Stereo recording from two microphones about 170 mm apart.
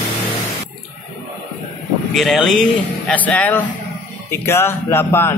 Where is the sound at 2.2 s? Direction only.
Centre (ahead or behind).